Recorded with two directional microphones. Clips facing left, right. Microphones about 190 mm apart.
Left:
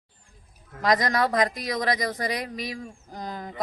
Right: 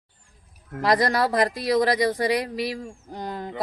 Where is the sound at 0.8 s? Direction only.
30° right (ahead or behind).